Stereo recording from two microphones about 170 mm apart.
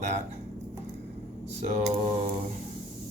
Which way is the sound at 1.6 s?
45° right (ahead or behind).